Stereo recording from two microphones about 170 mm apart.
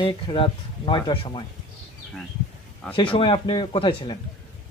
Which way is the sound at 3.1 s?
30° left (ahead or behind).